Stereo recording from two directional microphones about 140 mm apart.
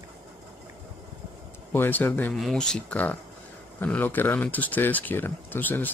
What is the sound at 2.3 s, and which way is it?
Speech, centre (ahead or behind).